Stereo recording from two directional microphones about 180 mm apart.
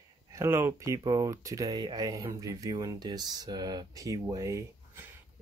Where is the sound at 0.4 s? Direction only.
15° right (ahead or behind).